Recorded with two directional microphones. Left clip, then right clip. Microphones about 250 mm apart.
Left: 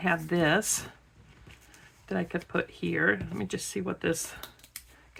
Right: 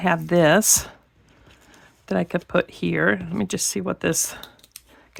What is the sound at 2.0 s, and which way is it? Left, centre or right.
Speech, right.